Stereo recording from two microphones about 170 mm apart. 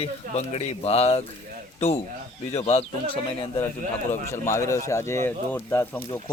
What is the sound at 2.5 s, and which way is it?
Speech, 35° left (ahead or behind).